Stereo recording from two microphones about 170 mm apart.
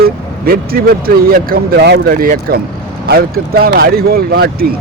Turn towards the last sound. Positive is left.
turn(degrees=-65)  # may be behind; listen again after turning